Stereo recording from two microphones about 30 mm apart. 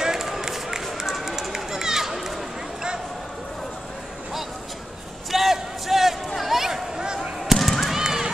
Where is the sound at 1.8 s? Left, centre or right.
Centre.